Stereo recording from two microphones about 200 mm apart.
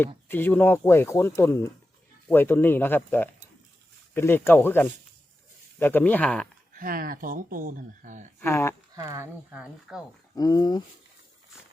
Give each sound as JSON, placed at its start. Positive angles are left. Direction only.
{"t": 0.3, "sound": "speech", "side_deg": 10}
{"t": 6.7, "sound": "speech", "side_deg": -45}
{"t": 8.4, "sound": "speech", "side_deg": 10}
{"t": 9.0, "sound": "speech", "side_deg": -15}
{"t": 10.3, "sound": "speech", "side_deg": 20}